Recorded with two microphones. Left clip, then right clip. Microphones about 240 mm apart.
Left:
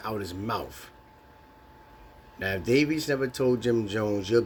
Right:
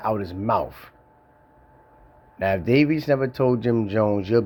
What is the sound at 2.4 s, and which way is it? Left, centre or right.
Speech, right.